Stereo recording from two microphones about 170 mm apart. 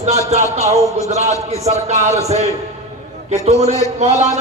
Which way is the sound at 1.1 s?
40° right (ahead or behind).